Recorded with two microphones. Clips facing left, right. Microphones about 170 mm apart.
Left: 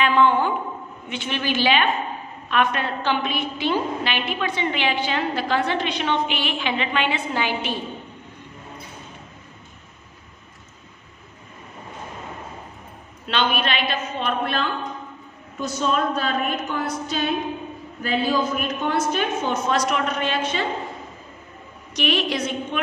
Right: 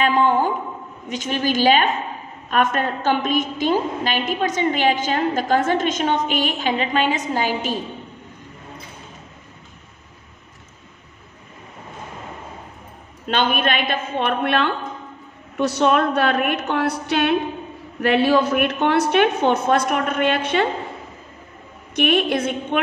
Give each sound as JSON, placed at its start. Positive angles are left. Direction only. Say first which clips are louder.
{"t": 0.0, "sound": "a woman's voice", "louder": "right 1 dB", "side_deg": -40}
{"t": 13.3, "sound": "a woman's voice", "louder": "right 3 dB", "side_deg": -50}
{"t": 21.9, "sound": "a woman's voice", "louder": "right 5 dB", "side_deg": -55}